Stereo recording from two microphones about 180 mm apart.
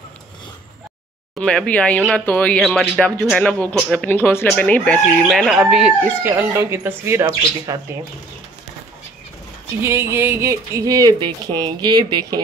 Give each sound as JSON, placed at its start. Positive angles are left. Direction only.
{"t": 1.4, "sound": "speech", "side_deg": 5}
{"t": 9.8, "sound": "speech", "side_deg": -15}